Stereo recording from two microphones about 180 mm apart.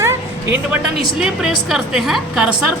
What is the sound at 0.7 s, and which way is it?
A woman's voice, 5° right (ahead or behind).